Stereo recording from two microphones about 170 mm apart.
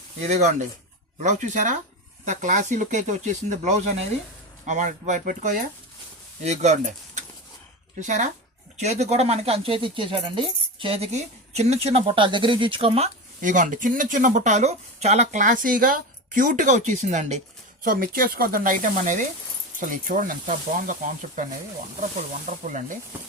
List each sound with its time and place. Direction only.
0.2 s speech: 40° right (ahead or behind)
17.8 s speech: 60° right (ahead or behind)